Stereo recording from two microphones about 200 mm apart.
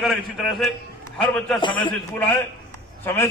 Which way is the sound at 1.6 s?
25° left (ahead or behind).